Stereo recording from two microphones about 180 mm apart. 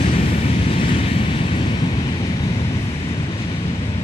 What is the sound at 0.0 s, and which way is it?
Vehicle, 35° left (ahead or behind).